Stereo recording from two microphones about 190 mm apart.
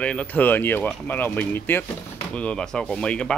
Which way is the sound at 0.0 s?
5° left (ahead or behind).